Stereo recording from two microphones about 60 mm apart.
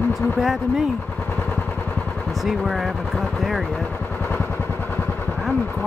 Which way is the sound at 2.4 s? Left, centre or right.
Centre.